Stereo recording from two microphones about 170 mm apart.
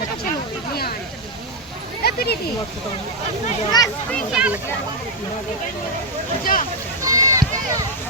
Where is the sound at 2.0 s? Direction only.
65° left (ahead or behind).